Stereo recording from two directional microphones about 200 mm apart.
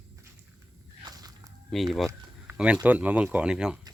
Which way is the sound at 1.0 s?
20° right (ahead or behind).